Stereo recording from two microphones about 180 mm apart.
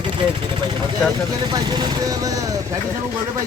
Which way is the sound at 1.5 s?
25° right (ahead or behind).